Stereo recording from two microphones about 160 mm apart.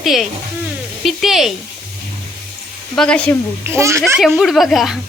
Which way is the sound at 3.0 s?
5° left (ahead or behind).